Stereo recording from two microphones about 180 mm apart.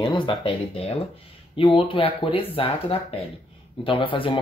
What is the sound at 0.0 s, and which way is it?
Speech, 25° left (ahead or behind).